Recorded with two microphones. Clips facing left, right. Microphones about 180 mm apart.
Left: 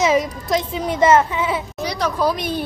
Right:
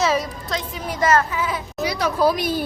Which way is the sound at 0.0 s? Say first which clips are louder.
Left 4 dB; 20° left (ahead or behind).